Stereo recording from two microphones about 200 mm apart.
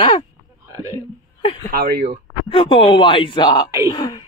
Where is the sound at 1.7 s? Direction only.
50° right (ahead or behind).